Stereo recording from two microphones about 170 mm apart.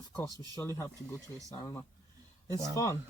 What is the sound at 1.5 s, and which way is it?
Speech, 20° left (ahead or behind).